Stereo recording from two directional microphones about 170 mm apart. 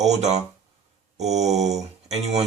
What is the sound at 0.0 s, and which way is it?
Speech, 40° right (ahead or behind).